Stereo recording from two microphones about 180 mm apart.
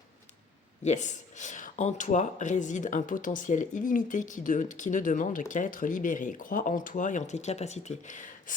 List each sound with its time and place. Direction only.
0.9 s speech: 40° left (ahead or behind)